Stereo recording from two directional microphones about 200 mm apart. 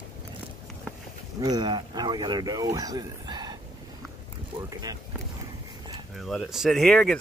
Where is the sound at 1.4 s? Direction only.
20° right (ahead or behind).